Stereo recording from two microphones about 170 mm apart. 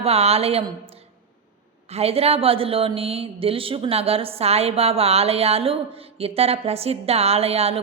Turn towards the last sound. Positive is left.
turn(degrees=-35)  # may be behind; listen again after turning